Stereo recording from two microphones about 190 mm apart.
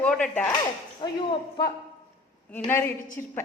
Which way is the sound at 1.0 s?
25° left (ahead or behind).